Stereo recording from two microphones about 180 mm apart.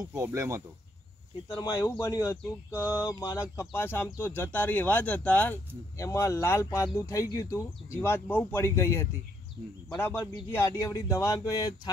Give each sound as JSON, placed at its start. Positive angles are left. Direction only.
{"t": 0.1, "sound": "speech", "side_deg": -15}
{"t": 1.5, "sound": "speech", "side_deg": 20}